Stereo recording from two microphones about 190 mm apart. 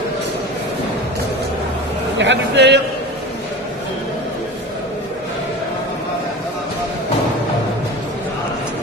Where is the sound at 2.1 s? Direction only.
70° right (ahead or behind).